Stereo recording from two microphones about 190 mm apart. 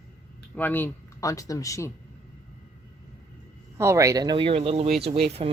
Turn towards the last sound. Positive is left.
turn(degrees=-30)  # may be behind; listen again after turning